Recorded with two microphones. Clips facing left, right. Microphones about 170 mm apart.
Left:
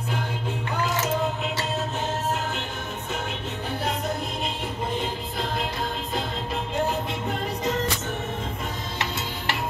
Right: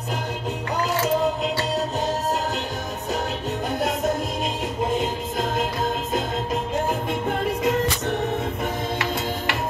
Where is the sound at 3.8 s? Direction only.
45° right (ahead or behind).